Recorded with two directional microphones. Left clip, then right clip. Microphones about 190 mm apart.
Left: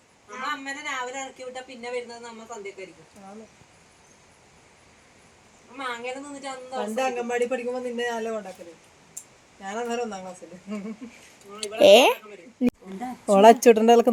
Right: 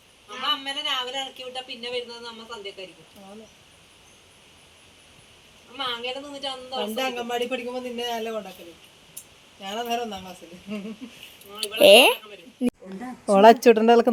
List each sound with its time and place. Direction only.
0.3 s a sound: 20° left (ahead or behind)
1.4 s speech: 20° left (ahead or behind)
5.7 s a woman's voice: 10° left (ahead or behind)
9.6 s speech: 5° right (ahead or behind)
11.6 s speech: 5° left (ahead or behind)